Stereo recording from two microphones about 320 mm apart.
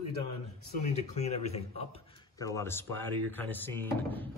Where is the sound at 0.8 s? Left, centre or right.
Centre.